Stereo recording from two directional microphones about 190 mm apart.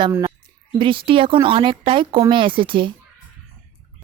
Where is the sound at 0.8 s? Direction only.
25° right (ahead or behind).